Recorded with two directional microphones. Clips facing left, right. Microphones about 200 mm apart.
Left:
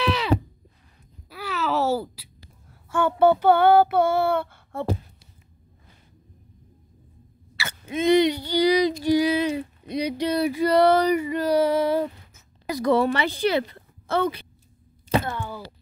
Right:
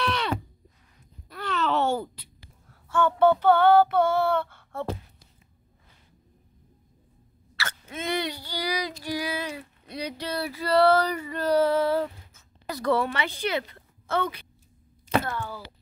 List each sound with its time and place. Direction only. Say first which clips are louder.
0.0 s a sound: left 3 dB; 5° left (ahead or behind)
1.3 s babbling: left 1 dB; 5° left (ahead or behind)
2.9 s child singing: left 2 dB; 10° left (ahead or behind)
7.5 s child singing: left 7 dB; 10° left (ahead or behind)
13.0 s a woman's voice: left 6 dB; 35° left (ahead or behind)
15.1 s speech: left 2 dB; 20° left (ahead or behind)